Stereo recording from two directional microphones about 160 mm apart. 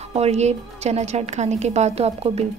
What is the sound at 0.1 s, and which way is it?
A woman's voice, 40° right (ahead or behind).